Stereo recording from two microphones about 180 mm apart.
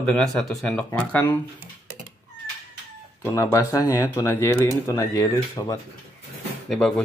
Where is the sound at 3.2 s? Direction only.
15° left (ahead or behind).